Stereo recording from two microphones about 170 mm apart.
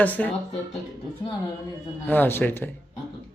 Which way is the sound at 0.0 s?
10° left (ahead or behind).